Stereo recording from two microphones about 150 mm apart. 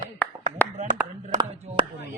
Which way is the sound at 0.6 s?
10° left (ahead or behind).